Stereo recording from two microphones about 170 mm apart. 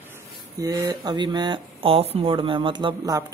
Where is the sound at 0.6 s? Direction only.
20° right (ahead or behind).